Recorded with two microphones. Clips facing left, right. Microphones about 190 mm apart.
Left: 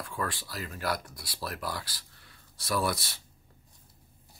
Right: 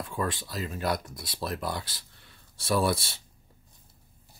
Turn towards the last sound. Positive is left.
turn(degrees=-25)  # may be behind; listen again after turning